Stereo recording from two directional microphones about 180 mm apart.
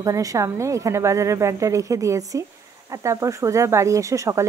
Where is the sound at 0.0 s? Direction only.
20° right (ahead or behind).